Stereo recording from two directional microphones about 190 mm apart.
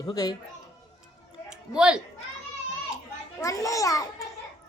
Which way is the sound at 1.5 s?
5° right (ahead or behind).